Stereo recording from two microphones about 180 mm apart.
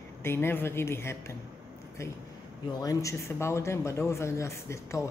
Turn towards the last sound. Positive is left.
turn(degrees=15)  # may be behind; listen again after turning